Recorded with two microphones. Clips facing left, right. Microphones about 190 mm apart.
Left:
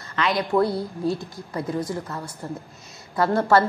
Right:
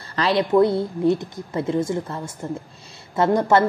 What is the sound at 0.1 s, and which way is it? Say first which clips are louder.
A woman's voice: right 4 dB; 30° right (ahead or behind).